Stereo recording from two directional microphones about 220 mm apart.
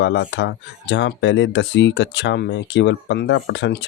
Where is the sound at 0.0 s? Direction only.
55° left (ahead or behind).